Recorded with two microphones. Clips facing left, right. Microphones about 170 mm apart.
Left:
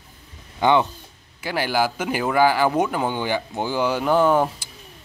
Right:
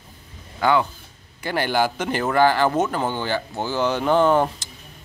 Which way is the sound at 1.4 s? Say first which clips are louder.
Right 1 dB; 5° left (ahead or behind).